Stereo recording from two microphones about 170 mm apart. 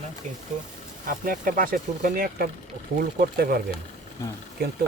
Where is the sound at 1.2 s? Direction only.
55° right (ahead or behind).